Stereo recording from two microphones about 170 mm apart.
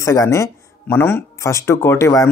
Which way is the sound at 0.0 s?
15° left (ahead or behind).